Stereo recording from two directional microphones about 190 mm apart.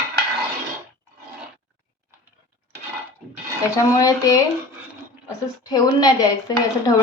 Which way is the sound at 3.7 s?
20° left (ahead or behind).